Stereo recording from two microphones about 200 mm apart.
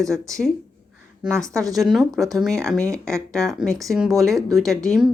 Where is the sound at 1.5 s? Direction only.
15° right (ahead or behind).